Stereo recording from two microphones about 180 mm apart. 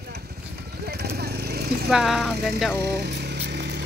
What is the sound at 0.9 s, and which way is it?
Vehicle, 65° right (ahead or behind).